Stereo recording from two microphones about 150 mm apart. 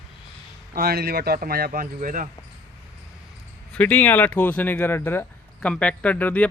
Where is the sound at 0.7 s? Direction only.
90° right; by 2.3 s 60° right (ahead or behind).